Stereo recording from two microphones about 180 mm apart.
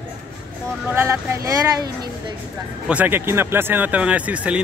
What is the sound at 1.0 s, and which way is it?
Speech, 15° right (ahead or behind).